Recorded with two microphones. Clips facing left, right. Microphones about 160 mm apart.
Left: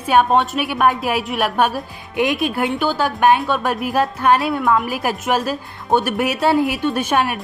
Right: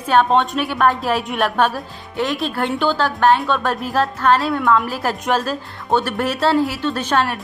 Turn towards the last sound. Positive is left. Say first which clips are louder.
# left 1 dB
turn(degrees=10)  # may be behind; listen again after turning